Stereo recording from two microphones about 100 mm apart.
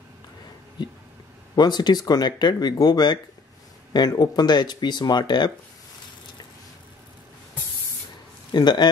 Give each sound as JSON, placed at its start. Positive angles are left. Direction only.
{"t": 1.5, "sound": "speech", "side_deg": 45}
{"t": 8.5, "sound": "speech", "side_deg": 45}